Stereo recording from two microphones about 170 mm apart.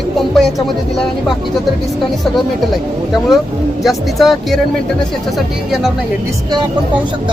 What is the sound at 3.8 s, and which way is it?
Music, centre (ahead or behind).